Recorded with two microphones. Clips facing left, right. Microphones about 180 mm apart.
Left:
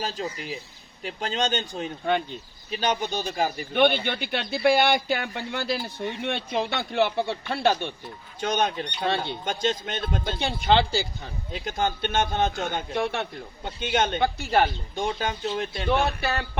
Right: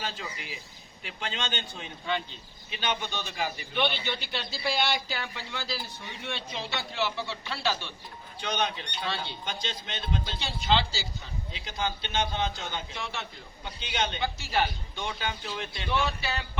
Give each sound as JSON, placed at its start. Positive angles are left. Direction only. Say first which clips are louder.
{"t": 0.0, "sound": "a man's voice", "louder": "left 7 dB", "side_deg": 40}